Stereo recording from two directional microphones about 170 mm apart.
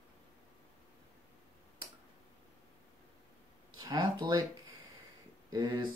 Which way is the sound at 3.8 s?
25° right (ahead or behind).